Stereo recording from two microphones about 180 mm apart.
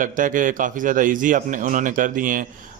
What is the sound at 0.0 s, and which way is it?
A man's voice, 50° right (ahead or behind).